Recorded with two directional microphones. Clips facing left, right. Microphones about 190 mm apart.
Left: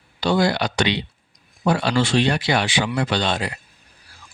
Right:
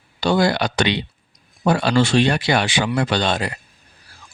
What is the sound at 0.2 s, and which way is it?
Speech, 50° right (ahead or behind).